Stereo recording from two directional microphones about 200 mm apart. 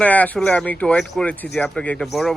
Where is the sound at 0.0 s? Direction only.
5° left (ahead or behind).